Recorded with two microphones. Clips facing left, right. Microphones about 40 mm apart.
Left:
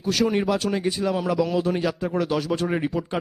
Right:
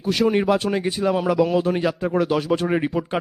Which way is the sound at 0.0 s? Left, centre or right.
Centre.